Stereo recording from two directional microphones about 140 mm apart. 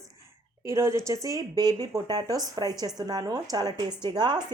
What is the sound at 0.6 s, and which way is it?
Speech, 20° right (ahead or behind).